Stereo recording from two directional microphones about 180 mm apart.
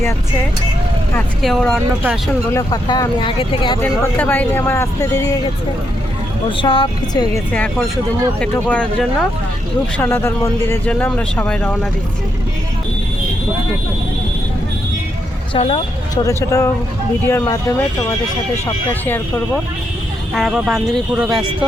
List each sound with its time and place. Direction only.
1.4 s speech: centre (ahead or behind)
2.5 s speech: 20° left (ahead or behind)
4.2 s speech: 10° left (ahead or behind)
6.6 s speech: 30° left (ahead or behind)
7.5 s speech: 10° left (ahead or behind)
15.5 s speech: 30° left (ahead or behind)
16.2 s speech: 15° left (ahead or behind)
20.3 s speech: centre (ahead or behind)